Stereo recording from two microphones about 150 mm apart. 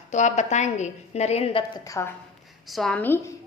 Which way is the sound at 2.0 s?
20° left (ahead or behind).